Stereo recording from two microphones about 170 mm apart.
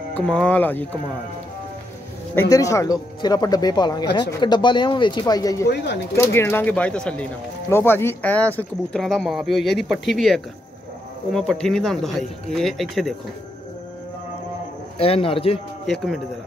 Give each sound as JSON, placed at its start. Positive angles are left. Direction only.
{"t": 0.1, "sound": "speech", "side_deg": 5}
{"t": 2.5, "sound": "speech", "side_deg": 20}
{"t": 15.0, "sound": "speech", "side_deg": 35}
{"t": 15.9, "sound": "speech", "side_deg": 0}